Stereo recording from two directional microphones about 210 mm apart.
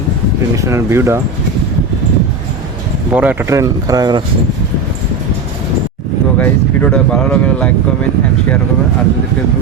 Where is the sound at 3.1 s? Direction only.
10° right (ahead or behind).